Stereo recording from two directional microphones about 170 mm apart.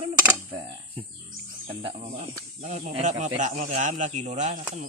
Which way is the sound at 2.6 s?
45° right (ahead or behind).